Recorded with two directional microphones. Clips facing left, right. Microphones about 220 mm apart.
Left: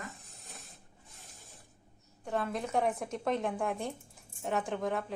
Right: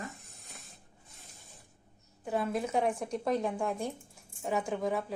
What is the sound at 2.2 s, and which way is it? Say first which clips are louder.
A woman's voice: right 2 dB; 5° right (ahead or behind).